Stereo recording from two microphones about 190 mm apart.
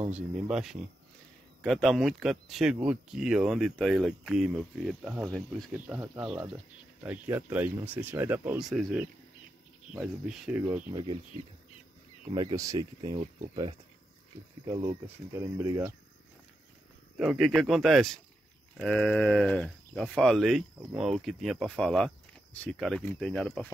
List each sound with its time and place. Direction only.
0.1 s speech: 5° right (ahead or behind)
5.7 s speech: 10° right (ahead or behind)
12.4 s speech: 20° right (ahead or behind)
17.2 s speech: 5° right (ahead or behind)